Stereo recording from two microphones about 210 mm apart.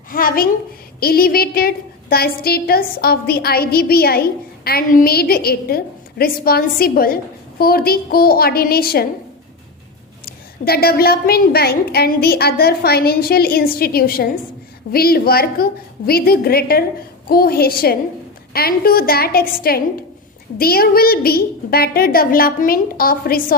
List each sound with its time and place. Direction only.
0.1 s a woman's voice: 45° left (ahead or behind)
10.2 s a woman's voice: 45° left (ahead or behind)